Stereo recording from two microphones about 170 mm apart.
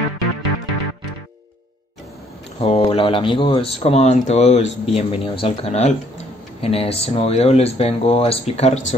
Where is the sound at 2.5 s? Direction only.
35° left (ahead or behind).